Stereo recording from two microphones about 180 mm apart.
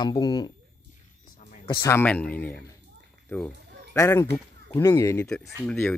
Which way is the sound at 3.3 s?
10° left (ahead or behind).